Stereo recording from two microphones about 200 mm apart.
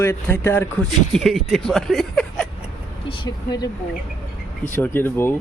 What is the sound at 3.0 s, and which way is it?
Speech, 20° left (ahead or behind).